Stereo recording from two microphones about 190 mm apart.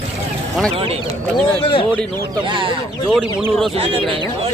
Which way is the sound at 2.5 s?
25° right (ahead or behind).